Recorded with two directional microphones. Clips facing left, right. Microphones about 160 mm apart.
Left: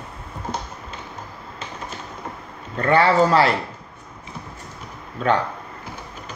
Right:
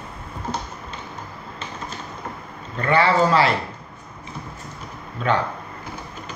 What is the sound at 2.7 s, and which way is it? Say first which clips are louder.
Speech: left 2 dB; 45° left (ahead or behind).